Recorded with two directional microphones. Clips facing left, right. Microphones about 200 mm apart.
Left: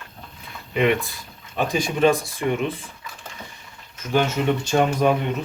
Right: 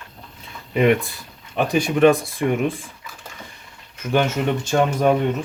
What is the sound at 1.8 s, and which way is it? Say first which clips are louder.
Speech: right 4 dB; 60° right (ahead or behind).